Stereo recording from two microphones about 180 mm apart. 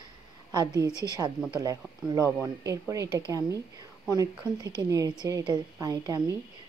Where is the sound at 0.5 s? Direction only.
20° right (ahead or behind).